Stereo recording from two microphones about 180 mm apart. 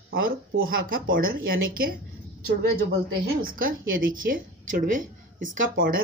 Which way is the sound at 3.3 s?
50° right (ahead or behind).